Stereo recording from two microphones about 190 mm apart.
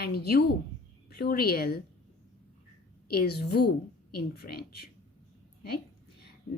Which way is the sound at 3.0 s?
55° left (ahead or behind).